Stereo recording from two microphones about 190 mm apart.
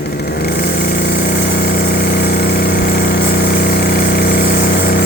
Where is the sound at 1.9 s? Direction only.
55° left (ahead or behind).